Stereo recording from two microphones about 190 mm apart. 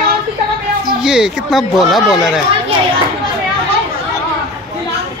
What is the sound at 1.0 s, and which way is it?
Speech, 5° right (ahead or behind).